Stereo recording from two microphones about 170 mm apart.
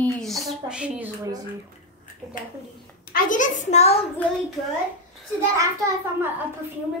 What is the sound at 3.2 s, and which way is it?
Speech, 50° left (ahead or behind).